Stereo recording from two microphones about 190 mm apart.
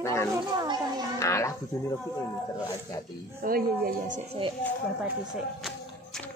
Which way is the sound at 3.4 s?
50° right (ahead or behind).